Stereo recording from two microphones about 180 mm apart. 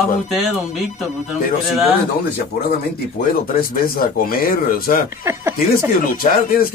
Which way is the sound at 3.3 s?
55° left (ahead or behind).